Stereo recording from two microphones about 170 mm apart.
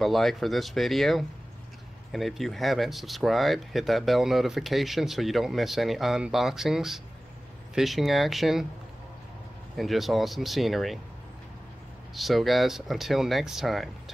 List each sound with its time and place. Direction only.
0.0 s speech: centre (ahead or behind)
9.8 s speech: centre (ahead or behind)
12.2 s speech: centre (ahead or behind)